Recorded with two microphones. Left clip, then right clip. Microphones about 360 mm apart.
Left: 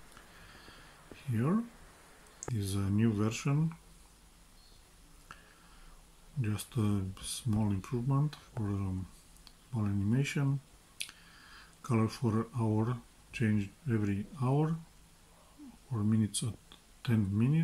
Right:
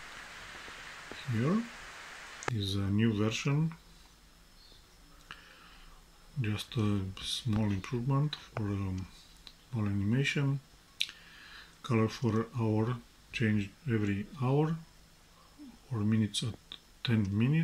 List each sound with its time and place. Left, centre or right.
1.8 s a sound: right
2.6 s speech: centre
6.4 s speech: centre
11.8 s speech: centre
15.9 s speech: centre